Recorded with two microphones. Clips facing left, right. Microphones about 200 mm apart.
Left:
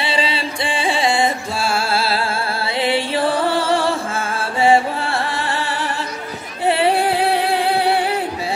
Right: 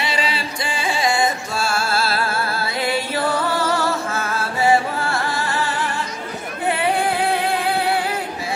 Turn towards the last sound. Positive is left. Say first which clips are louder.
# left 3 dB
turn(degrees=35)  # may be behind; listen again after turning